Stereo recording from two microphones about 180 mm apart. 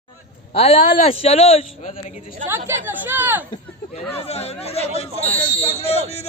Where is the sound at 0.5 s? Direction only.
35° left (ahead or behind).